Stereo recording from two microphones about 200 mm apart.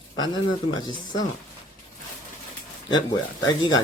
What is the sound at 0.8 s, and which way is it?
Speech, 20° left (ahead or behind).